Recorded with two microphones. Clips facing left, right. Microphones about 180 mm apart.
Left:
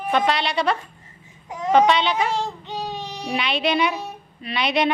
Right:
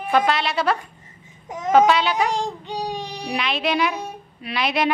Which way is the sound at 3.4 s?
Centre (ahead or behind).